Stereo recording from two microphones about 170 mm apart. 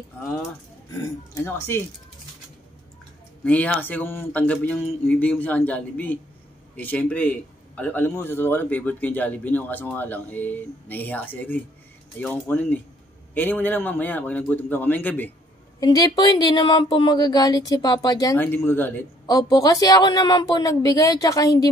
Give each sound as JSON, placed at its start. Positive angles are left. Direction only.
{"t": 3.4, "sound": "a man's voice", "side_deg": 10}
{"t": 15.8, "sound": "speech", "side_deg": 25}
{"t": 19.2, "sound": "speech", "side_deg": 25}